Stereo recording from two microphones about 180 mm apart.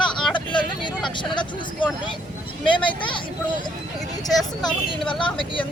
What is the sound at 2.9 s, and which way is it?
Speech, 25° left (ahead or behind).